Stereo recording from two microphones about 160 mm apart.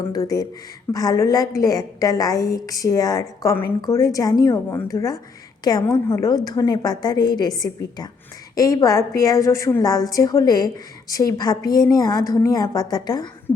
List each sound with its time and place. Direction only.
0.1 s a woman's voice: 25° left (ahead or behind)